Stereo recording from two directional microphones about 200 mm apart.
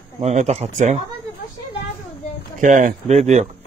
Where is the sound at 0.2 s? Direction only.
35° right (ahead or behind).